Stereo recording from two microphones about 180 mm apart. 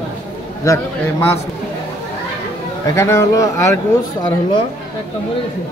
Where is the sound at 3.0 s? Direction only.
15° left (ahead or behind).